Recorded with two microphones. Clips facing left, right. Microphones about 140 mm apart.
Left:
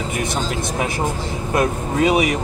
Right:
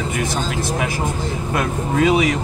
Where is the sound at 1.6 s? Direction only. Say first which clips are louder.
Even; 25° left (ahead or behind).